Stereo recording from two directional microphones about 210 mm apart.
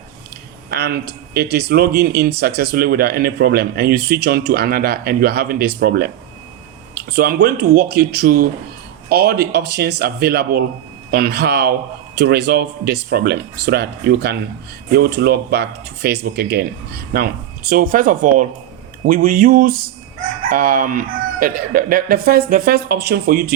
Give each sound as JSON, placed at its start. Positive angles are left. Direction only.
{"t": 0.7, "sound": "speech", "side_deg": -45}